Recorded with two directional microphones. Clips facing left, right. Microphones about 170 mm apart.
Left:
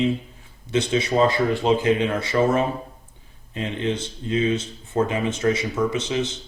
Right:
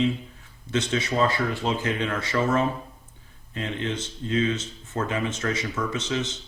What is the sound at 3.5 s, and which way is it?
Speech, 15° left (ahead or behind).